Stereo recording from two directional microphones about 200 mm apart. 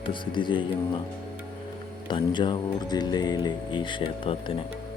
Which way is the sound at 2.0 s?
25° left (ahead or behind).